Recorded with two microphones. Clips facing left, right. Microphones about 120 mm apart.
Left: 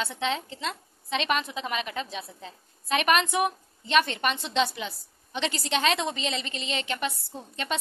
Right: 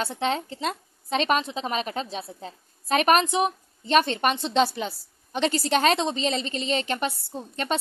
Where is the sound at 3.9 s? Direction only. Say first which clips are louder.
Right 3 dB; 35° right (ahead or behind).